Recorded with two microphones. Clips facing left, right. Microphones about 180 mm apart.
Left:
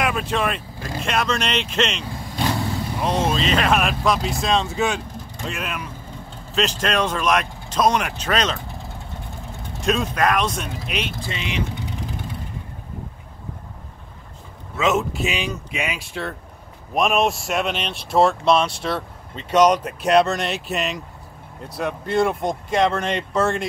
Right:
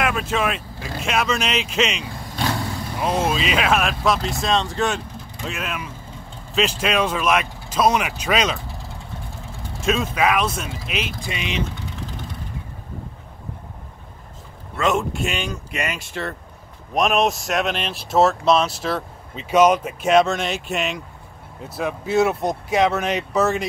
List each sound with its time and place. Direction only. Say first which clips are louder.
0.0 s speech: even; centre (ahead or behind)
9.8 s speech: even; centre (ahead or behind)
11.2 s speech: right 1 dB; 15° right (ahead or behind)
14.8 s speech: even; centre (ahead or behind)